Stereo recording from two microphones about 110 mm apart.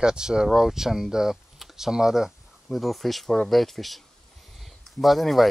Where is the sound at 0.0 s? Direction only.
5° right (ahead or behind).